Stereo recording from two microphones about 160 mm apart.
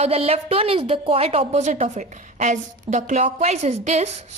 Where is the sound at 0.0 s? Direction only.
40° right (ahead or behind).